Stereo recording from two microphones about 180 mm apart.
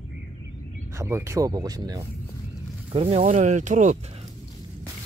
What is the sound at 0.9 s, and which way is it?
Speech, 15° right (ahead or behind).